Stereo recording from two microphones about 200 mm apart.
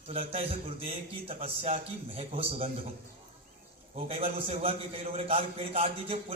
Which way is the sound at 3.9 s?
30° right (ahead or behind).